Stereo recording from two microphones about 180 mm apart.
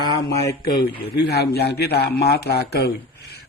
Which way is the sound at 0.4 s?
65° left (ahead or behind).